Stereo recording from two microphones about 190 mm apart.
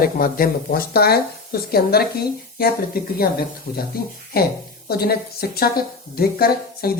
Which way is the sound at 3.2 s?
55° left (ahead or behind).